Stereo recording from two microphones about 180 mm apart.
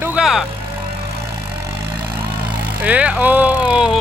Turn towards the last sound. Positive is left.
turn(degrees=-5)  # may be behind; listen again after turning